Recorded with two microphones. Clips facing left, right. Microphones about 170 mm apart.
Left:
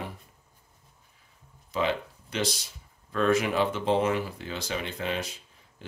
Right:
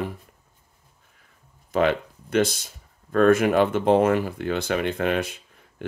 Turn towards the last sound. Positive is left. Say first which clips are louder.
# right 8 dB
turn(degrees=-55)  # may be behind; listen again after turning